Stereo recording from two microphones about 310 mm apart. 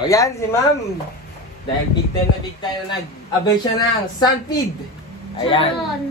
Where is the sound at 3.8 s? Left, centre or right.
Centre.